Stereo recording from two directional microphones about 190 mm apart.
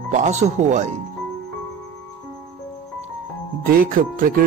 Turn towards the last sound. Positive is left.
turn(degrees=-45)  # may be behind; listen again after turning